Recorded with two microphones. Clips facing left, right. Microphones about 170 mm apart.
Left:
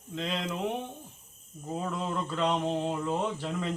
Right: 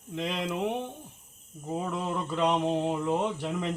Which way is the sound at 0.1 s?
10° right (ahead or behind).